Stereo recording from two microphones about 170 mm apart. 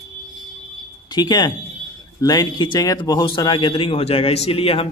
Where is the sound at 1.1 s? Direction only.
25° left (ahead or behind).